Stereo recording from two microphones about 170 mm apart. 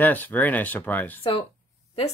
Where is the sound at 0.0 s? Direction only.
10° left (ahead or behind).